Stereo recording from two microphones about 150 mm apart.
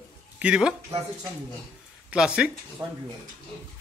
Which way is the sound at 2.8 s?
25° right (ahead or behind).